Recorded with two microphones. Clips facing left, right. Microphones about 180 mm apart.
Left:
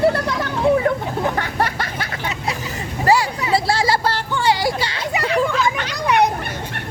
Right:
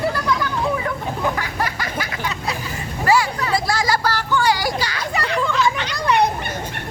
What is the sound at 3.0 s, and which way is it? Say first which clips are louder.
Vehicle: left 1 dB; 35° left (ahead or behind).